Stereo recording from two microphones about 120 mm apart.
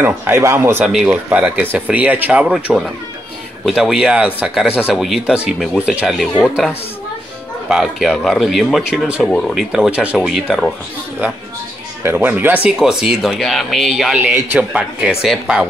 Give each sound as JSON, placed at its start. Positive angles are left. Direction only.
{"t": 0.0, "sound": "speech", "side_deg": -20}
{"t": 0.8, "sound": "speech", "side_deg": -5}
{"t": 12.0, "sound": "speech", "side_deg": -15}
{"t": 12.7, "sound": "speech", "side_deg": -5}